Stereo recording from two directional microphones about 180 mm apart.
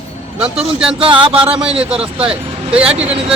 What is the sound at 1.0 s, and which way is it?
Speech, 30° right (ahead or behind).